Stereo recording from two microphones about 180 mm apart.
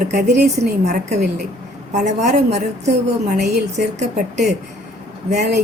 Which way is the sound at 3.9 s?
40° right (ahead or behind).